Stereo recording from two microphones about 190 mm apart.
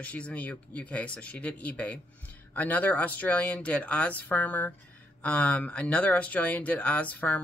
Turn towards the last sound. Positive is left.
turn(degrees=5)  # may be behind; listen again after turning